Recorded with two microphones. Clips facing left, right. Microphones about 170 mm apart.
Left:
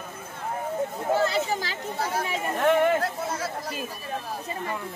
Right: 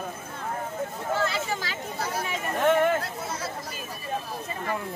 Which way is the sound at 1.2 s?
35° left (ahead or behind).